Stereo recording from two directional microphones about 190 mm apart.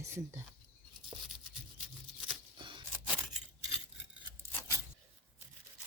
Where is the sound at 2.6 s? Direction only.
25° right (ahead or behind).